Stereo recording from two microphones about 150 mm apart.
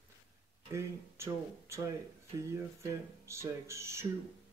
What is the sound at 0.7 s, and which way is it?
Speech, 20° right (ahead or behind).